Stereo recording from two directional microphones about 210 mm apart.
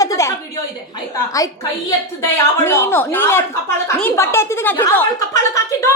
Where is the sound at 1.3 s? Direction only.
15° left (ahead or behind).